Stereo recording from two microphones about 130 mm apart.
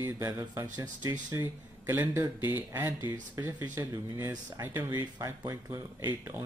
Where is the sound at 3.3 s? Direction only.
20° right (ahead or behind).